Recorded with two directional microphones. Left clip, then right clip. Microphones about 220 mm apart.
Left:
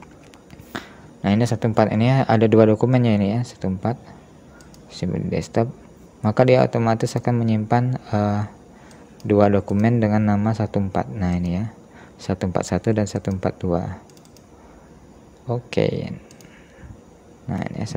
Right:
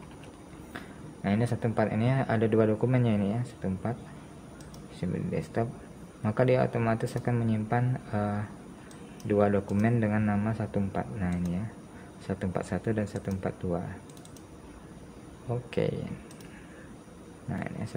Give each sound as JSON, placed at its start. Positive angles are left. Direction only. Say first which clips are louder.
{"t": 0.7, "sound": "speech", "louder": "left 10 dB", "side_deg": 40}
{"t": 4.9, "sound": "speech", "louder": "left 8 dB", "side_deg": 35}
{"t": 15.4, "sound": "speech", "louder": "left 9 dB", "side_deg": 30}
{"t": 17.5, "sound": "speech", "louder": "left 8 dB", "side_deg": 30}